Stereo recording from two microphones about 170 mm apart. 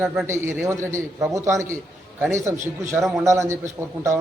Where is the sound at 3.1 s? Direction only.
15° right (ahead or behind).